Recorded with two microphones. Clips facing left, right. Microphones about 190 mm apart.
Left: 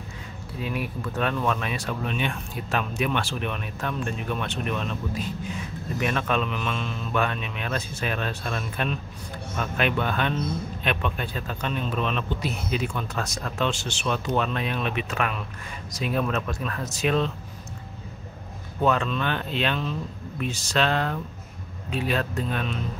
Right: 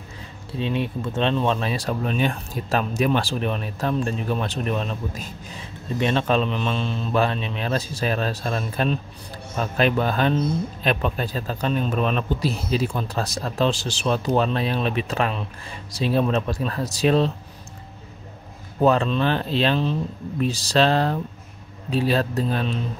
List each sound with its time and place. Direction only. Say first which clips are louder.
0.6 s speech: right 5 dB; 25° right (ahead or behind)
18.8 s speech: right 5 dB; 35° right (ahead or behind)